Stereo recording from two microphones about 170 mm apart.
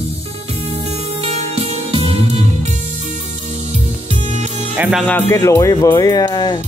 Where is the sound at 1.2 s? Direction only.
35° right (ahead or behind).